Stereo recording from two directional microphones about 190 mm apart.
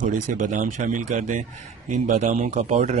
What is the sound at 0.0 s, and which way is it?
Speech, 40° right (ahead or behind).